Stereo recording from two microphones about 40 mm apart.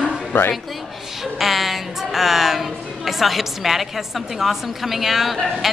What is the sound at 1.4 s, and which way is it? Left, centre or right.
A woman's voice, centre.